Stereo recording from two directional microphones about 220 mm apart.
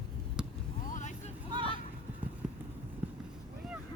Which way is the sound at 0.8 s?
35° left (ahead or behind).